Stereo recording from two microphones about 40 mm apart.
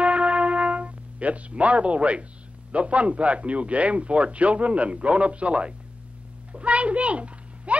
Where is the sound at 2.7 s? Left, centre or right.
Right.